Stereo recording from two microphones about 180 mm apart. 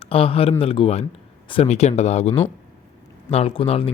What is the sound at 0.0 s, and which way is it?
A man's voice, 30° left (ahead or behind).